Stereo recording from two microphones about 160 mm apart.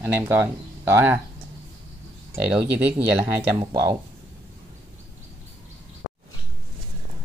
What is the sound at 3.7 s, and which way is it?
Cutlery, 25° right (ahead or behind).